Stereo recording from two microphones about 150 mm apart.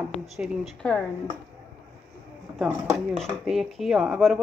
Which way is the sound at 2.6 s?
5° right (ahead or behind).